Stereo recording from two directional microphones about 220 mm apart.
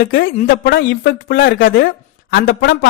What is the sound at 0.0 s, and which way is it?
A woman's voice, 55° left (ahead or behind).